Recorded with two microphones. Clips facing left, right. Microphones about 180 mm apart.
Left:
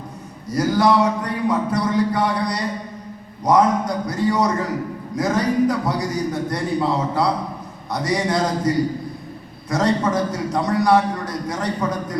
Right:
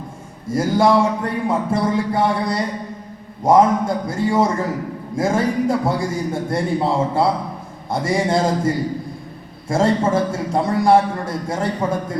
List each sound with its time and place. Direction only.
0.4 s a man's voice: 25° right (ahead or behind)